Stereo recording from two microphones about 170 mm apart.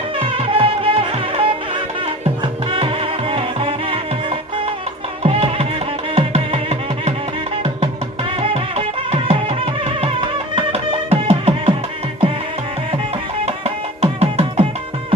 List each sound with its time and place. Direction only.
0.2 s music: 35° right (ahead or behind)
13.4 s music: 35° right (ahead or behind)